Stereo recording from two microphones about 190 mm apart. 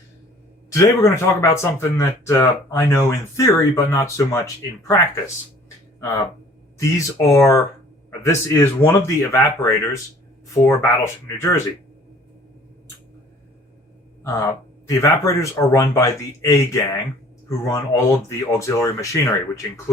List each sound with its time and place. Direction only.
0.7 s speech: 15° left (ahead or behind)
6.7 s speech: 15° left (ahead or behind)
14.8 s speech: 15° left (ahead or behind)